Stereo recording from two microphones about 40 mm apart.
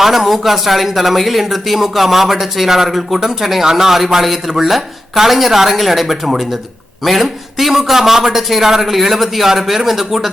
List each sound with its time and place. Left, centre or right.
0.0 s speech: centre